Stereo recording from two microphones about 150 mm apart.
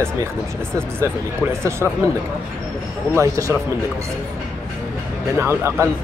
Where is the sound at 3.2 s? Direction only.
20° right (ahead or behind).